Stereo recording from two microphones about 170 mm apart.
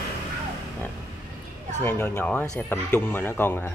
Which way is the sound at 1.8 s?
10° left (ahead or behind).